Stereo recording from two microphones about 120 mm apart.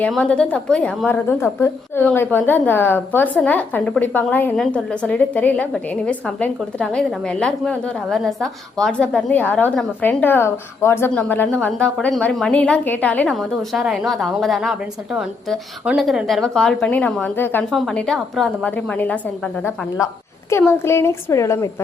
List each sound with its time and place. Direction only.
0.2 s a woman's voice: 10° left (ahead or behind)
13.2 s a woman's voice: centre (ahead or behind); by 17.6 s 15° left (ahead or behind)
17.6 s a woman's voice: 5° left (ahead or behind)
20.5 s a woman's voice: 20° left (ahead or behind)